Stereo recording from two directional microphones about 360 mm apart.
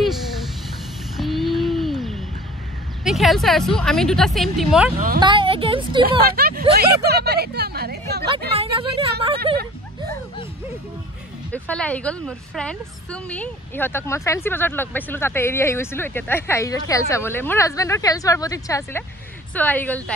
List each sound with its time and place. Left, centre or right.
1.1 s a sound: centre
3.0 s speech: centre
5.2 s speech: centre
6.3 s speech: right
9.5 s a sound: centre
11.5 s a woman's voice: centre